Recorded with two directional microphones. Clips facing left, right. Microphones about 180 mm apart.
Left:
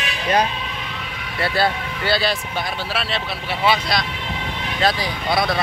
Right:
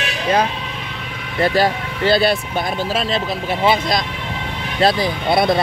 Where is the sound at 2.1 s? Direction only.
50° right (ahead or behind).